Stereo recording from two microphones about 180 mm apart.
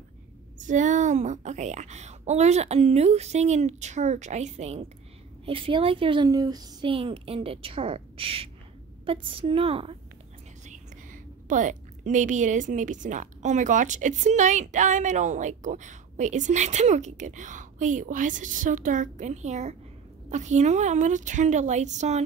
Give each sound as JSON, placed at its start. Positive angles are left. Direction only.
{"t": 0.6, "sound": "a woman's voice", "side_deg": -45}
{"t": 10.6, "sound": "a woman's voice", "side_deg": -45}